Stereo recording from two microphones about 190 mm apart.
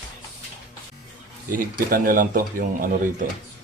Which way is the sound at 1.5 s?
45° right (ahead or behind).